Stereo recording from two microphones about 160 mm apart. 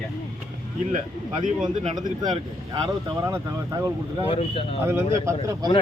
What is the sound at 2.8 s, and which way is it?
Speech, 20° right (ahead or behind).